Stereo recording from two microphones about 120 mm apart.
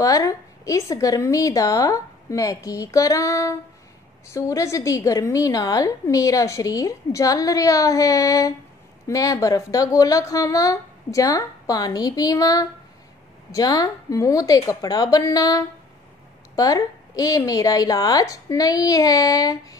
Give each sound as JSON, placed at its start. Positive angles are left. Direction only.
{"t": 0.0, "sound": "a woman's voice", "side_deg": 30}